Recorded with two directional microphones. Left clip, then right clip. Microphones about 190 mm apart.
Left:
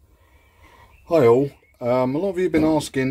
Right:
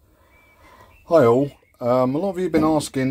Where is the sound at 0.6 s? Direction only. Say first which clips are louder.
Right 1 dB; 5° right (ahead or behind).